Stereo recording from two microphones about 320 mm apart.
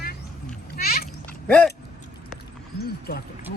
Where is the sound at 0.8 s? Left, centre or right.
Left.